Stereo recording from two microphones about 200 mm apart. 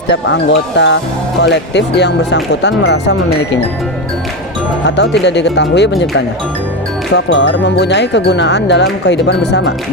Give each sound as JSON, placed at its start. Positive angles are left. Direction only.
{"t": 0.1, "sound": "speech", "side_deg": 60}
{"t": 5.2, "sound": "speech", "side_deg": 60}